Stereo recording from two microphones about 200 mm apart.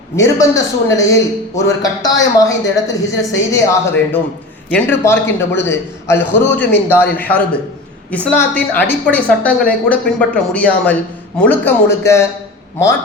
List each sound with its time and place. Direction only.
0.2 s a woman's voice: 15° left (ahead or behind)